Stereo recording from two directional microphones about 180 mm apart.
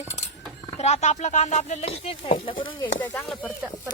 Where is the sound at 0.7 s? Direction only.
40° left (ahead or behind).